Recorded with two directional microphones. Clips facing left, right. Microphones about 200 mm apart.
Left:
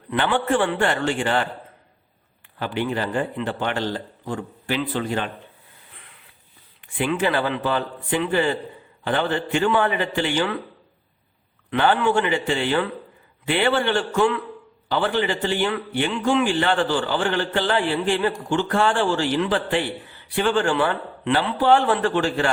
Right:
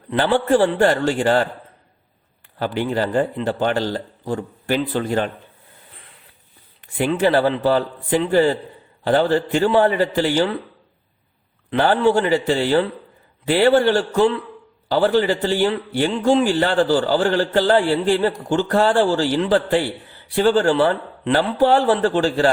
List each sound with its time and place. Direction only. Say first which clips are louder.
0.1 s a man's voice: right 4 dB; 35° right (ahead or behind)
2.6 s a man's voice: right 4 dB; 40° right (ahead or behind)
6.8 s a man's voice: right 4 dB; 40° right (ahead or behind)
11.7 s a man's voice: right 3 dB; 35° right (ahead or behind)